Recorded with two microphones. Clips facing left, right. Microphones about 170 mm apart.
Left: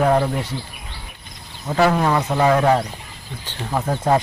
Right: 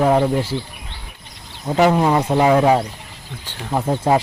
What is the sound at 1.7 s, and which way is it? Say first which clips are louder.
Speech: right 2 dB; 15° right (ahead or behind).